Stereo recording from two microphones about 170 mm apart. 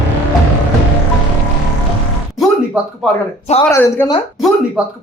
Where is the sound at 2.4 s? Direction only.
Centre (ahead or behind).